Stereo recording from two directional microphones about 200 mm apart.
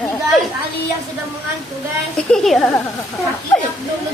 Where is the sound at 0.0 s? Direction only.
Centre (ahead or behind).